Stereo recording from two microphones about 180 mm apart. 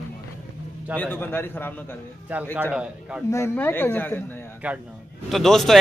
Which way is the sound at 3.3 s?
15° left (ahead or behind).